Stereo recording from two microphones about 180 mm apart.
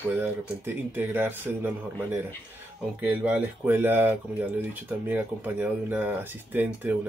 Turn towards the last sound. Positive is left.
turn(degrees=-10)  # may be behind; listen again after turning